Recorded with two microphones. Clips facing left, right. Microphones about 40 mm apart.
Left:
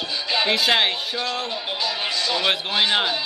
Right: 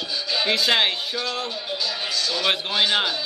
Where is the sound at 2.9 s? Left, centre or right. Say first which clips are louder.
Left 2 dB; centre.